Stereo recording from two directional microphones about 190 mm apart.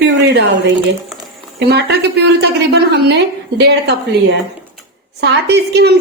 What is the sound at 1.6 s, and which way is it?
A woman's voice, 60° right (ahead or behind).